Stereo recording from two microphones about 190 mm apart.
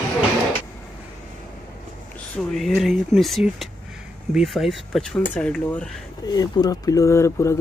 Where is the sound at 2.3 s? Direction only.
Centre (ahead or behind).